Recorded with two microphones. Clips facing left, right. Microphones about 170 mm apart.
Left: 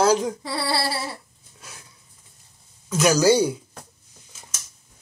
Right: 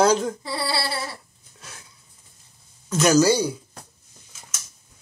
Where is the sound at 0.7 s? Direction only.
40° left (ahead or behind).